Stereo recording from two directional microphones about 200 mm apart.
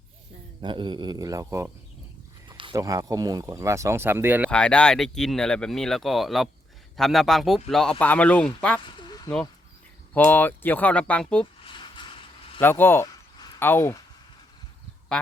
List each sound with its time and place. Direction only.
0.6 s a man's voice: 25° right (ahead or behind)
4.5 s speech: 5° left (ahead or behind)
9.0 s a sound: 20° left (ahead or behind)
10.2 s speech: 10° left (ahead or behind)
11.6 s vehicle: 25° left (ahead or behind)
12.5 s a sound: 10° left (ahead or behind)